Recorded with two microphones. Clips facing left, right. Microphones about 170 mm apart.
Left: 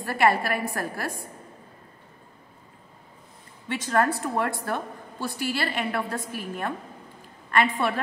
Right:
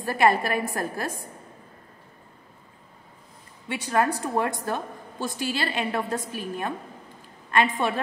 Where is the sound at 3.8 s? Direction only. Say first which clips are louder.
Even; 15° right (ahead or behind).